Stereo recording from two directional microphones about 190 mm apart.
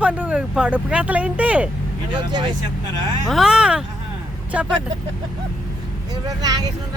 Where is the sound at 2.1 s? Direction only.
25° right (ahead or behind).